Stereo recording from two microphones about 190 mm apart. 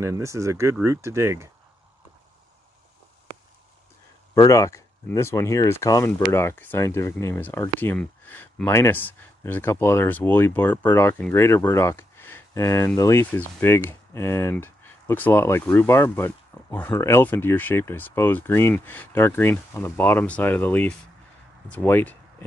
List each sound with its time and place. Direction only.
0.0 s speech: 15° right (ahead or behind)
4.4 s speech: 15° left (ahead or behind)